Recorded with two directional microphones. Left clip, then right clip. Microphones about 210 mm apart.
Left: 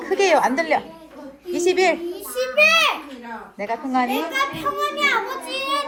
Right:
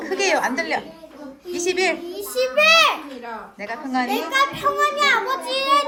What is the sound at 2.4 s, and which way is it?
Speech, 15° right (ahead or behind).